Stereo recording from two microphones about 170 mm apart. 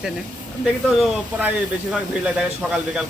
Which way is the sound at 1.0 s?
5° right (ahead or behind).